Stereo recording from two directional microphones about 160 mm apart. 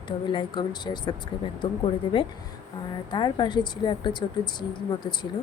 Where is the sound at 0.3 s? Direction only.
30° left (ahead or behind).